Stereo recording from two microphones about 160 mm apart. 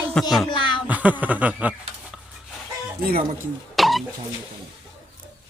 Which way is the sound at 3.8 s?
Centre (ahead or behind).